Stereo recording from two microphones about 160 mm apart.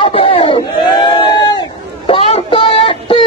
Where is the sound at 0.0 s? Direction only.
35° left (ahead or behind).